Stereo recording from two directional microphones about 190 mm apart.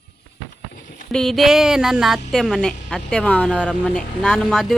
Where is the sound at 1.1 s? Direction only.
Centre (ahead or behind).